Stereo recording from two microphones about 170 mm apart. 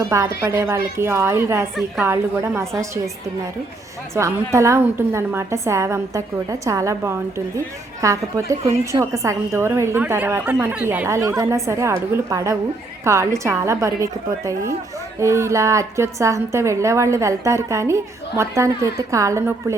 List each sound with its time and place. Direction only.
0.0 s a woman's voice: 15° right (ahead or behind)
4.1 s a woman's voice: 15° right (ahead or behind)